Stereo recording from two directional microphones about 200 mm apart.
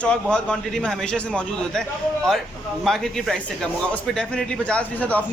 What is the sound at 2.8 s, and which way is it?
A man's voice, centre (ahead or behind).